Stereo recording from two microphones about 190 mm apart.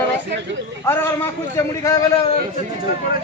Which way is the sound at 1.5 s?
20° left (ahead or behind).